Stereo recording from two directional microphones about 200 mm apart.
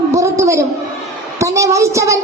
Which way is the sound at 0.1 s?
15° right (ahead or behind).